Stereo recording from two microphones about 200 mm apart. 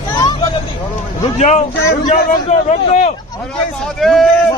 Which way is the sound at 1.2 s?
30° left (ahead or behind).